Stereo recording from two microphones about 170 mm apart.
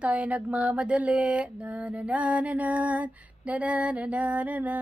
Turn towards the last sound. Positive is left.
turn(degrees=-10)  # may be behind; listen again after turning